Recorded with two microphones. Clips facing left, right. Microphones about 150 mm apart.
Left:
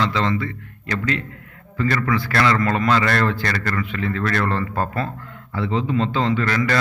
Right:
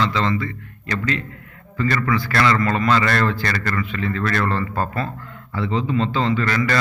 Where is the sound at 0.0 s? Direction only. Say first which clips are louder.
Even; 60° left (ahead or behind).